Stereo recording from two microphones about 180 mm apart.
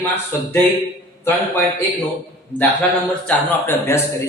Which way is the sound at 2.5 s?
10° left (ahead or behind).